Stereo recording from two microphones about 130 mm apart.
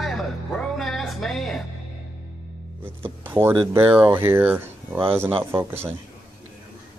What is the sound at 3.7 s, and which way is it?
Speech, 15° right (ahead or behind).